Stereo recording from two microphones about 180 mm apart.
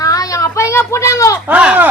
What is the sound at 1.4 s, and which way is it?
Speech, 5° right (ahead or behind).